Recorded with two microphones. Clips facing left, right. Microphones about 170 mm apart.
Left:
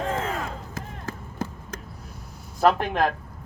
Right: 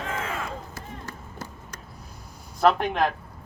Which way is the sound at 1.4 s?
90° left.